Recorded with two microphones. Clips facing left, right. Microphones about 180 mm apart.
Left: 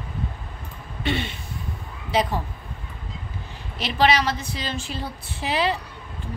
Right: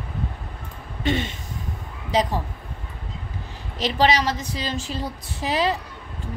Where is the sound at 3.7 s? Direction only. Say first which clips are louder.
Even; 35° right (ahead or behind).